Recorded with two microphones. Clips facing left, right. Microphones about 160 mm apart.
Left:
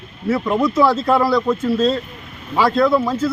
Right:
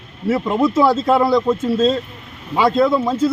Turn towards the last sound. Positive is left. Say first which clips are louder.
# right 1 dB
turn(degrees=-25)  # may be behind; listen again after turning